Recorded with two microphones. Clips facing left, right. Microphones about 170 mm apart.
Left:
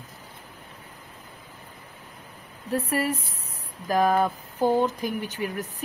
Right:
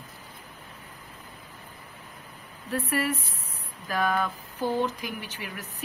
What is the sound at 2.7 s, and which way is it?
Speech, 40° left (ahead or behind).